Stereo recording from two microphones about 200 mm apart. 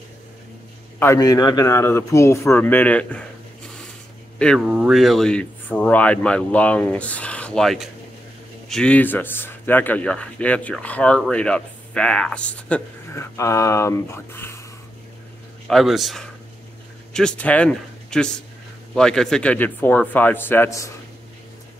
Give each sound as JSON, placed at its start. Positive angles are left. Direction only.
{"t": 0.9, "sound": "speech", "side_deg": 15}
{"t": 4.4, "sound": "speech", "side_deg": 0}
{"t": 15.7, "sound": "speech", "side_deg": 0}